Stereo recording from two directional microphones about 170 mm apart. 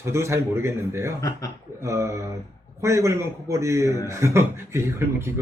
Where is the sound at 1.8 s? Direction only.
15° right (ahead or behind).